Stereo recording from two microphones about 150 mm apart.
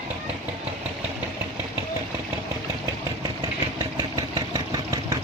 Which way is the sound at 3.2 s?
20° right (ahead or behind).